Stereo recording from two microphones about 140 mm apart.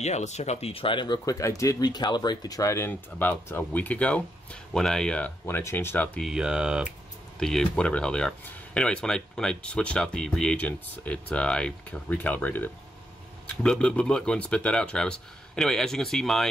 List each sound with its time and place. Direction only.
0.0 s speech: 55° left (ahead or behind); by 6.2 s 15° left (ahead or behind)
6.2 s speech: 5° right (ahead or behind)
7.3 s speech: 5° left (ahead or behind)